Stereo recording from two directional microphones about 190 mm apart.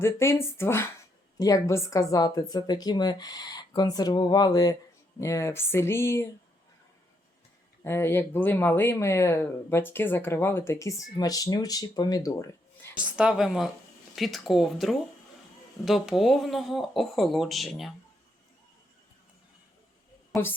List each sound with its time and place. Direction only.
0.0 s speech: 15° left (ahead or behind)
7.9 s speech: 15° left (ahead or behind)
13.1 s speech: 5° right (ahead or behind)
20.3 s a woman's voice: 10° left (ahead or behind)